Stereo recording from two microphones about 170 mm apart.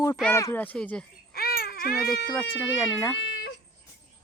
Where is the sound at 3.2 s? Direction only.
70° left (ahead or behind).